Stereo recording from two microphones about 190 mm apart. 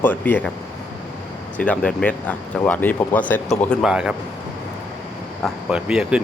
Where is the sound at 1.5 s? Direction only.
5° left (ahead or behind).